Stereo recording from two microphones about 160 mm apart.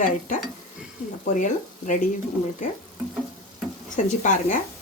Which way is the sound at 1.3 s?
50° left (ahead or behind).